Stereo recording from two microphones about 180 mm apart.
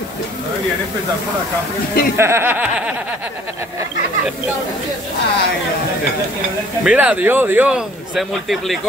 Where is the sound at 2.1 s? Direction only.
15° right (ahead or behind).